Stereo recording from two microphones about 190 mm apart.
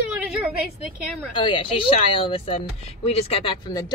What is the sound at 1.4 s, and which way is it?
Speech, 25° left (ahead or behind).